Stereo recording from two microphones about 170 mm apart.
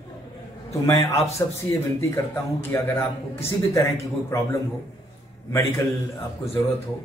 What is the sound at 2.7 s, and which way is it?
A man's voice, 15° left (ahead or behind).